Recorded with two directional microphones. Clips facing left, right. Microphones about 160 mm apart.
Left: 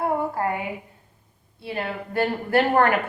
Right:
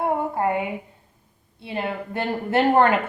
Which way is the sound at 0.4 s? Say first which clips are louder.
Right 6 dB; 20° right (ahead or behind).